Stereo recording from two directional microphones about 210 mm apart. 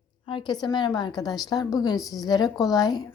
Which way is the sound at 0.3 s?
20° left (ahead or behind).